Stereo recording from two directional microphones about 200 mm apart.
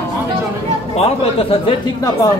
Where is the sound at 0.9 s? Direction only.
30° left (ahead or behind).